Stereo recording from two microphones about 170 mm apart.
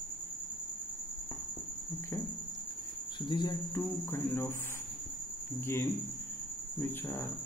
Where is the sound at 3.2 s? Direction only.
25° left (ahead or behind).